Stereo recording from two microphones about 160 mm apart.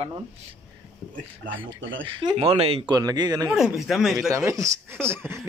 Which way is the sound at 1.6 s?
30° right (ahead or behind).